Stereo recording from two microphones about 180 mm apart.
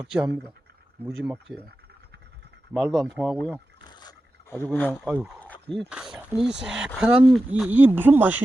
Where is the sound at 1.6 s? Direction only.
65° right (ahead or behind).